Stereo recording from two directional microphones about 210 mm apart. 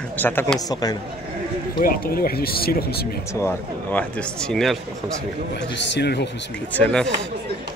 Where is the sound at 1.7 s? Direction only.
45° left (ahead or behind).